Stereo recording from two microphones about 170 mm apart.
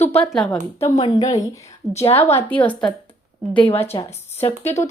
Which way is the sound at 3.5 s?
30° left (ahead or behind).